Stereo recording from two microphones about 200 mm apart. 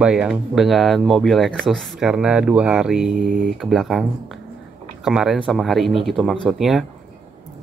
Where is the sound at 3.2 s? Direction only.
45° right (ahead or behind).